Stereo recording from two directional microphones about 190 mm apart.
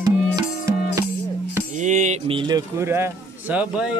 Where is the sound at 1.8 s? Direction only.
40° right (ahead or behind).